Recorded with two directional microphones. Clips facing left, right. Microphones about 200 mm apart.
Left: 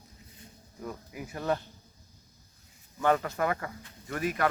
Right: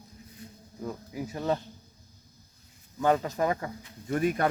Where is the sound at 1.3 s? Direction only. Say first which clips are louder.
Right 1 dB; 20° right (ahead or behind).